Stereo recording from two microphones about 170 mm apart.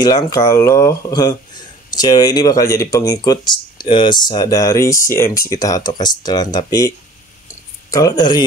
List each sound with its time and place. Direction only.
0.0 s speech: 20° left (ahead or behind)
7.9 s speech: 20° left (ahead or behind)